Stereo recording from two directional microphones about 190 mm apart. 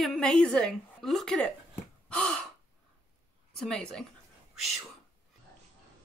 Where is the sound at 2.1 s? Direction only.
5° left (ahead or behind).